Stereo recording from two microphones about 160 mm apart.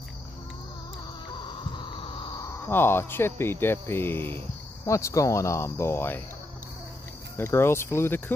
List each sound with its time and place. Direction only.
1.4 s a sound: 30° left (ahead or behind)
2.7 s speech: 15° left (ahead or behind)
7.3 s speech: 15° left (ahead or behind)